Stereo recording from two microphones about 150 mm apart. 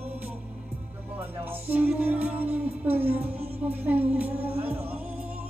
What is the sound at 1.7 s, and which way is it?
Music, 10° right (ahead or behind).